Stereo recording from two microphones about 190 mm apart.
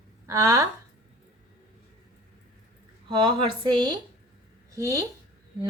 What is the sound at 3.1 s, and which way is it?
A woman's voice, 25° right (ahead or behind).